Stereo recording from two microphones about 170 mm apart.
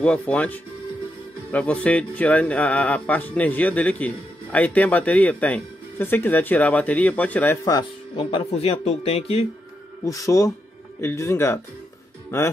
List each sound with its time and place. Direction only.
0.0 s speech: 5° left (ahead or behind)
8.2 s a man's voice: 30° left (ahead or behind)
10.0 s speech: 20° left (ahead or behind)